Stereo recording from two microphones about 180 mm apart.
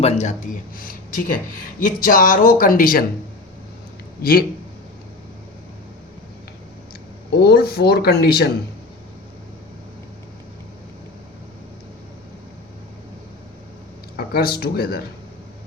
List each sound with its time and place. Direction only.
0.0 s speech: 40° left (ahead or behind)
4.2 s speech: 55° left (ahead or behind)
7.3 s speech: 60° left (ahead or behind)
14.2 s speech: 60° left (ahead or behind)